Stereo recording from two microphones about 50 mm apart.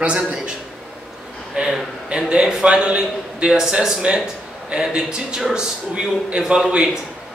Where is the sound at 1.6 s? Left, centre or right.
Centre.